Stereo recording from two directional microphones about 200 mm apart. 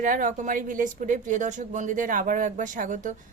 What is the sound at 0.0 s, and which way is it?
A woman's voice, 40° right (ahead or behind).